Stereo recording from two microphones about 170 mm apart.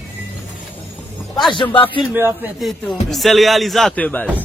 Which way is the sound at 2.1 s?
10° right (ahead or behind).